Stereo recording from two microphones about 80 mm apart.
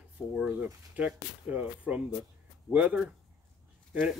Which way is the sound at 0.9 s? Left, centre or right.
Centre.